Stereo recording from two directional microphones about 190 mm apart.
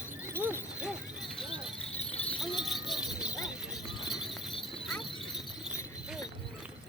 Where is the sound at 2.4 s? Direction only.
Centre (ahead or behind).